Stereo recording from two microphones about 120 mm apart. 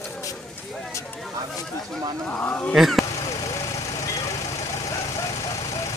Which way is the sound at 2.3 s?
15° left (ahead or behind).